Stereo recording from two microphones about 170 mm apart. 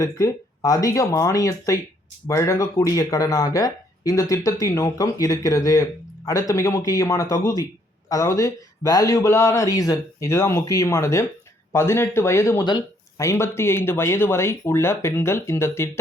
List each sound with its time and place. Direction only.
0.0 s speech: 20° left (ahead or behind)